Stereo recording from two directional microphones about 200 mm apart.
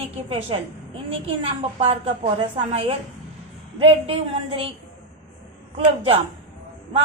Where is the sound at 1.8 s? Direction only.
30° right (ahead or behind).